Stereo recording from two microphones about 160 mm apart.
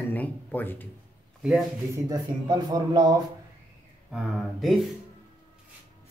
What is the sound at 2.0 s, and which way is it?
Speech, 25° right (ahead or behind).